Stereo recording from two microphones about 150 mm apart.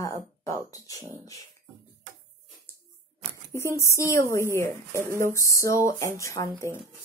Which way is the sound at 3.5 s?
20° left (ahead or behind).